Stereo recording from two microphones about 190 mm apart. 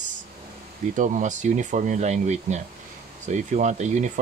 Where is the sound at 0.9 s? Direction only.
40° right (ahead or behind).